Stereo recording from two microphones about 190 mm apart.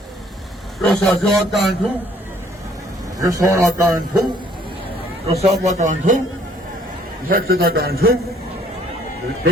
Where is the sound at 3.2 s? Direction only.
20° right (ahead or behind).